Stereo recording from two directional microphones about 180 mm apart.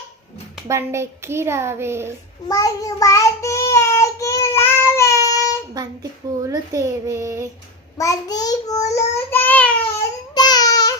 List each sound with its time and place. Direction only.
0.7 s a child's voice: 15° right (ahead or behind)
2.5 s child singing: 20° left (ahead or behind)
5.7 s a child's voice: 20° right (ahead or behind)
7.9 s child singing: 20° left (ahead or behind)
10.3 s baby cry: 20° left (ahead or behind)